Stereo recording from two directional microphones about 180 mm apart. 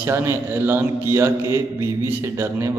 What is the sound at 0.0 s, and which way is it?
A man's voice, 15° right (ahead or behind).